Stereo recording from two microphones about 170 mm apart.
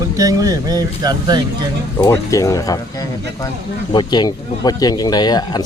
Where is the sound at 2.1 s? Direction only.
20° left (ahead or behind).